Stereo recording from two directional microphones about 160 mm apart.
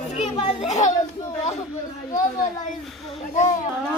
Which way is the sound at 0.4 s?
45° left (ahead or behind).